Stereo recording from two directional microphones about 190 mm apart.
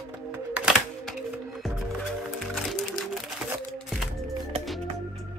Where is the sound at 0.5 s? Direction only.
5° right (ahead or behind).